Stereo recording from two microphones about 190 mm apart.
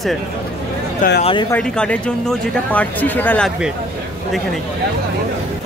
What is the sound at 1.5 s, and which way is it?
Speech, 5° left (ahead or behind).